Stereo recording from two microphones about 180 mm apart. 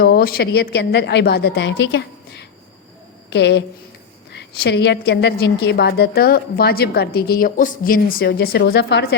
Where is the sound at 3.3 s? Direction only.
75° left (ahead or behind).